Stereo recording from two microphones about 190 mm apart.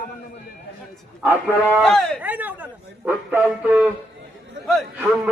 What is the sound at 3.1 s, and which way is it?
A man's voice, 10° right (ahead or behind).